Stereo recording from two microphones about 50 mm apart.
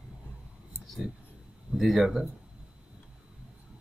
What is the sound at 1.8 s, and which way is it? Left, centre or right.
Speech, centre.